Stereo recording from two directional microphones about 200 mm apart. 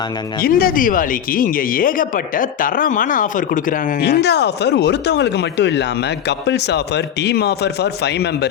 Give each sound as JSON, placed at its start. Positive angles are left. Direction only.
{"t": 0.4, "sound": "speech", "side_deg": 45}